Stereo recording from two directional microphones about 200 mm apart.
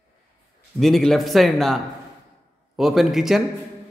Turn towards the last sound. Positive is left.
turn(degrees=0)  # may be behind; listen again after turning